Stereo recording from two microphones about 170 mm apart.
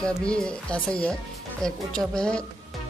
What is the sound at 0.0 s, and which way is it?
Speech, 5° left (ahead or behind).